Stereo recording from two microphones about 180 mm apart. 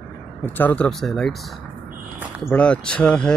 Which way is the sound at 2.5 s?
5° left (ahead or behind).